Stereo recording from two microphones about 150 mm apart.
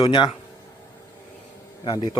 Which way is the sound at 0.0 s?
35° left (ahead or behind).